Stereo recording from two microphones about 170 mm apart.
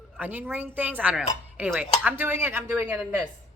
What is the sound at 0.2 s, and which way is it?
Speech, 10° right (ahead or behind).